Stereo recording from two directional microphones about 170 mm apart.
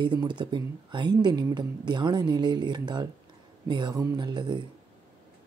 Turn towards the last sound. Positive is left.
turn(degrees=-25)  # may be behind; listen again after turning